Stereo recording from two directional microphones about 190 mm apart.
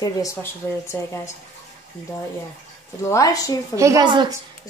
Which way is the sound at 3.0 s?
15° left (ahead or behind).